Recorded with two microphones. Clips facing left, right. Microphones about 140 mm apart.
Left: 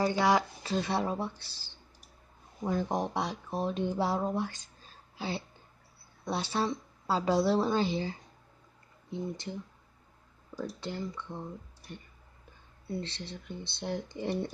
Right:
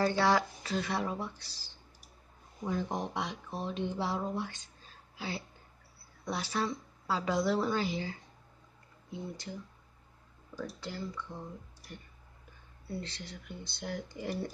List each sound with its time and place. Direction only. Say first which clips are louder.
0.0 s speech: left 1 dB; 15° left (ahead or behind)
0.7 s a woman's voice: left 3 dB; 30° left (ahead or behind)
2.6 s speech: left 4 dB; 40° left (ahead or behind)
5.1 s a woman's voice: left 3 dB; 30° left (ahead or behind)
10.5 s a woman's voice: left 3 dB; 20° left (ahead or behind)
12.8 s a woman's voice: left 3 dB; 25° left (ahead or behind)